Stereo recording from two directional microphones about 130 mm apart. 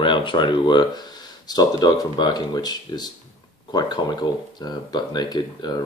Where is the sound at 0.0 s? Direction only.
40° left (ahead or behind).